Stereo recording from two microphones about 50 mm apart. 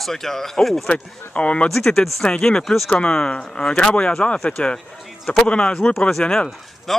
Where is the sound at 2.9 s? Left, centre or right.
Centre.